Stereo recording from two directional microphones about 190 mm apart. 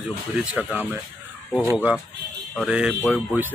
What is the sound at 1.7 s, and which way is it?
Speech, 5° right (ahead or behind).